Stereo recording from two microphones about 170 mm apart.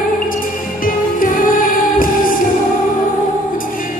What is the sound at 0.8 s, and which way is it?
Music, 55° left (ahead or behind).